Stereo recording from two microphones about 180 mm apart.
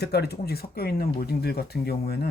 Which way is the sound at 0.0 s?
65° left (ahead or behind).